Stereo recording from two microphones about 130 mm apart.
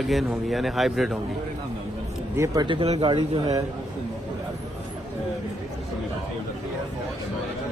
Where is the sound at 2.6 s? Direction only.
40° right (ahead or behind).